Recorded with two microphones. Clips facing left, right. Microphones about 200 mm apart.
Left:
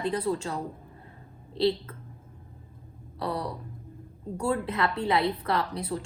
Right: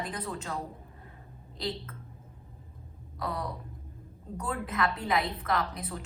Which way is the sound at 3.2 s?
30° left (ahead or behind).